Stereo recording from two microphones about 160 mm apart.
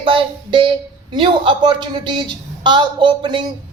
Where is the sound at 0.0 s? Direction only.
35° right (ahead or behind).